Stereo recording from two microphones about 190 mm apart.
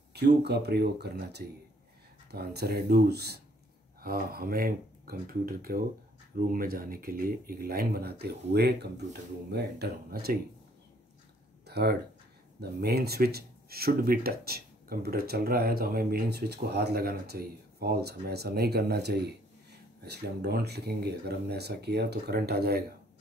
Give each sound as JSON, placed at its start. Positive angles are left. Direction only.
{"t": 0.1, "sound": "speech", "side_deg": -60}
{"t": 11.6, "sound": "speech", "side_deg": -60}